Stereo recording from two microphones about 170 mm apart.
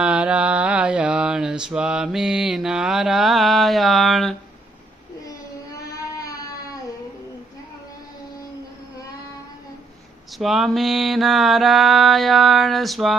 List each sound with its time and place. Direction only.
0.0 s mantra: 5° right (ahead or behind)
5.7 s a sound: 20° left (ahead or behind)
10.3 s mantra: centre (ahead or behind)